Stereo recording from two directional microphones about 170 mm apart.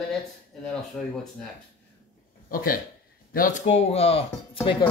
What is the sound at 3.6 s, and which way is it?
Speech, 40° left (ahead or behind).